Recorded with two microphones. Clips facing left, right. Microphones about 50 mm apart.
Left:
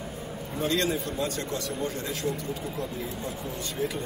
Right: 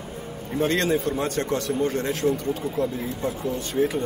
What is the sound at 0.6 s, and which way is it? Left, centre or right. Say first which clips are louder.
A man's voice: right 5 dB; right.